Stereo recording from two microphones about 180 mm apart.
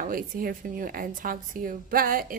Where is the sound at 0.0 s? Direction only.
50° right (ahead or behind).